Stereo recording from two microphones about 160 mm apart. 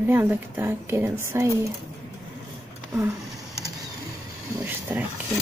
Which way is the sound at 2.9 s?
15° right (ahead or behind).